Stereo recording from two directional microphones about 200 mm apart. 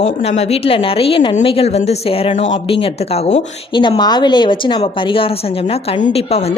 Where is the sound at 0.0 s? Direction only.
30° left (ahead or behind).